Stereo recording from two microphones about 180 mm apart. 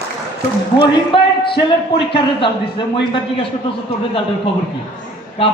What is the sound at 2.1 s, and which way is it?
A man's voice, 30° left (ahead or behind).